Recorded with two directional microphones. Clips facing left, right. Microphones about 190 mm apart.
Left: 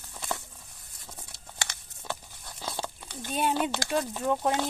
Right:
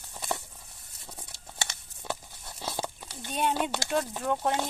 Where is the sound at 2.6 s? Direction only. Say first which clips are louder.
Right 1 dB; 20° right (ahead or behind).